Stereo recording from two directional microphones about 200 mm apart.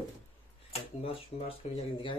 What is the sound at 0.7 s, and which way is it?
Speech, 30° left (ahead or behind).